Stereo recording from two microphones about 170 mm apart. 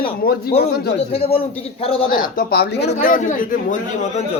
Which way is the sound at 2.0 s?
55° left (ahead or behind).